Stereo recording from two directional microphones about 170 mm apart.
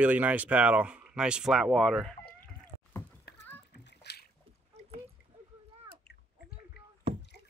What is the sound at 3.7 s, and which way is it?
Splash, 85° left.